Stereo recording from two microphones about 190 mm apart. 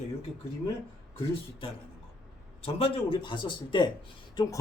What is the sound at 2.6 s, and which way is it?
Speech, 30° left (ahead or behind).